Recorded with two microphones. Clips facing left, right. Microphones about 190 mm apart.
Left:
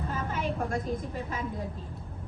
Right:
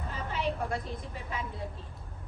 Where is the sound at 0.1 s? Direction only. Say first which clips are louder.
Right 1 dB; 45° left (ahead or behind).